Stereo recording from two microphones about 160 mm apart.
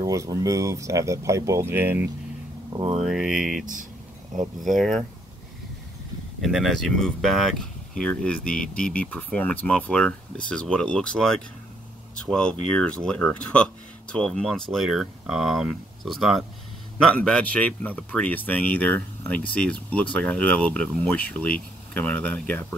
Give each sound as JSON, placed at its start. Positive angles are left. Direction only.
{"t": 0.0, "sound": "speech", "side_deg": -20}
{"t": 2.7, "sound": "speech", "side_deg": -35}
{"t": 3.0, "sound": "speech", "side_deg": -5}
{"t": 4.7, "sound": "speech", "side_deg": 0}
{"t": 6.4, "sound": "speech", "side_deg": 0}